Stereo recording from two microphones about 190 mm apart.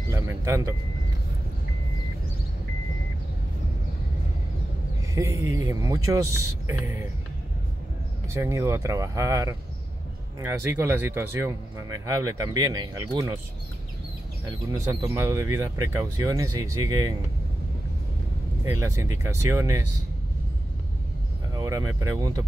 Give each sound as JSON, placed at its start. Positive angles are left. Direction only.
{"t": 0.1, "sound": "speech", "side_deg": -15}
{"t": 5.1, "sound": "speech", "side_deg": -15}
{"t": 8.3, "sound": "speech", "side_deg": -15}
{"t": 14.7, "sound": "speech", "side_deg": -15}
{"t": 18.6, "sound": "speech", "side_deg": -15}
{"t": 21.5, "sound": "speech", "side_deg": -15}